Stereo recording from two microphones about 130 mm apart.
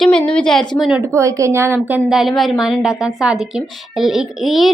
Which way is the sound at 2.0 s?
Centre (ahead or behind).